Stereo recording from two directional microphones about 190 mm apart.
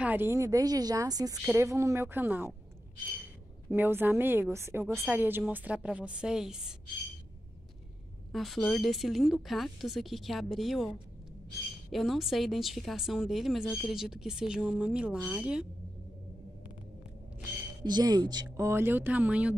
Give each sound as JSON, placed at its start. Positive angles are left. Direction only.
{"t": 0.0, "sound": "speech", "side_deg": -10}
{"t": 3.7, "sound": "speech", "side_deg": -10}
{"t": 8.3, "sound": "speech", "side_deg": 0}
{"t": 17.8, "sound": "speech", "side_deg": -20}